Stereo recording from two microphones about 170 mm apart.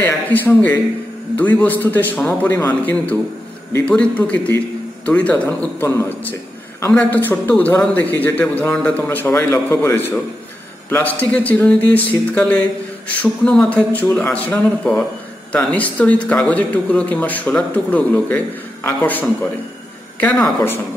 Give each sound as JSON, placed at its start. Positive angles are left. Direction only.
{"t": 0.0, "sound": "a man's voice", "side_deg": 10}